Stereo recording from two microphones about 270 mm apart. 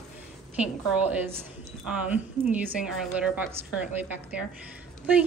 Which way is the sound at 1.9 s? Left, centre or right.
Centre.